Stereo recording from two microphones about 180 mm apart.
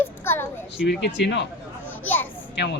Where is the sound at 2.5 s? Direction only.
65° left (ahead or behind).